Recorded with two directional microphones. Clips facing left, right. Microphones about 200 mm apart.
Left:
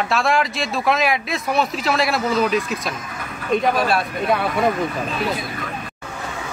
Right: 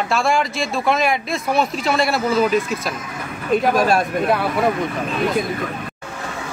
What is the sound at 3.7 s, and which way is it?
Speech, 45° right (ahead or behind).